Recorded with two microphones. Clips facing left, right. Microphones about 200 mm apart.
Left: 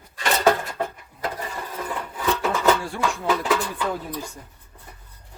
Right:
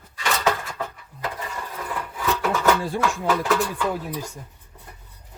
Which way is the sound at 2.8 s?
20° right (ahead or behind).